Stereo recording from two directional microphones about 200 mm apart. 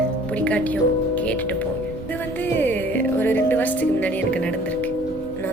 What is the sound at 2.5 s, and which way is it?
Speech, 10° left (ahead or behind).